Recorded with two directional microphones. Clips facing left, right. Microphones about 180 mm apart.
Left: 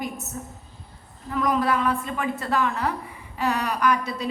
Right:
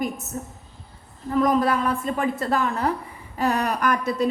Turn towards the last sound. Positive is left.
turn(degrees=-50)  # may be behind; listen again after turning